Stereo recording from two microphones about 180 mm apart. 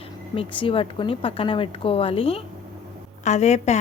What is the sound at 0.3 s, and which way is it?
A woman's voice, 30° left (ahead or behind).